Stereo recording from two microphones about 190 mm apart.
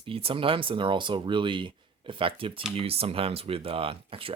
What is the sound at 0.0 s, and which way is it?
Speech, 30° right (ahead or behind).